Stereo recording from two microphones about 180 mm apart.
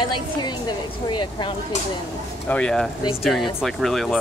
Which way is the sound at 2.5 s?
5° left (ahead or behind).